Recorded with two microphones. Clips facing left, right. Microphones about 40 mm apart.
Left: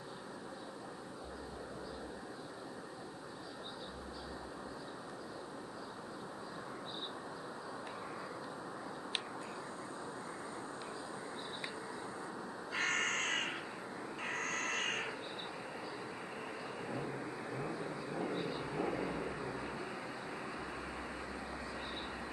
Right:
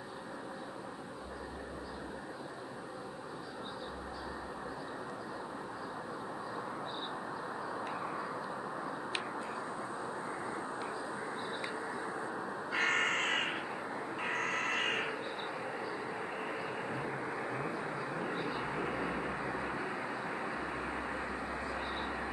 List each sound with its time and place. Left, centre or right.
11.9 s crow: right
16.3 s vehicle: right